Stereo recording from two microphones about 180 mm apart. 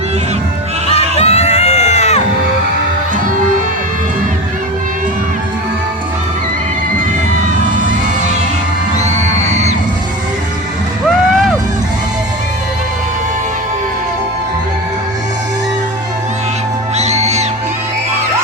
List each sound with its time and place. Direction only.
1.2 s crowd: 35° left (ahead or behind)
9.0 s music: 40° right (ahead or behind)
11.1 s music: centre (ahead or behind)
17.0 s music: 40° right (ahead or behind)